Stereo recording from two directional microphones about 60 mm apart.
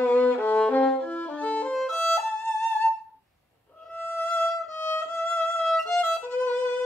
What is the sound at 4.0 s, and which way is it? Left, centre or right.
Violin, left.